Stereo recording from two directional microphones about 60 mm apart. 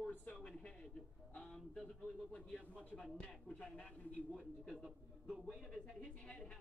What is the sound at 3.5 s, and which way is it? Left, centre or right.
Speech, centre.